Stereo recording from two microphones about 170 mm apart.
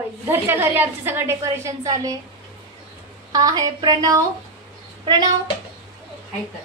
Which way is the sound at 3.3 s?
20° right (ahead or behind).